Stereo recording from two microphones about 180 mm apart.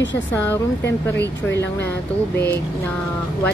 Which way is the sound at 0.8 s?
70° left (ahead or behind).